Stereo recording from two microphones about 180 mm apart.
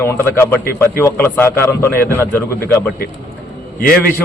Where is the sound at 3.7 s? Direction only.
55° left (ahead or behind).